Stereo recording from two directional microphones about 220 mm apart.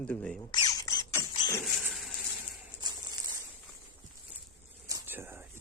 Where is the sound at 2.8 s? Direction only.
20° right (ahead or behind).